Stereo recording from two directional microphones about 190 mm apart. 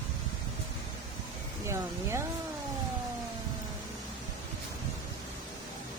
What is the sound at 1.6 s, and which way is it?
Speech, 15° right (ahead or behind).